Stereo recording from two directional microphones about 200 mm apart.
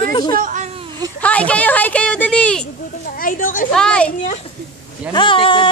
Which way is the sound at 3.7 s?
5° left (ahead or behind).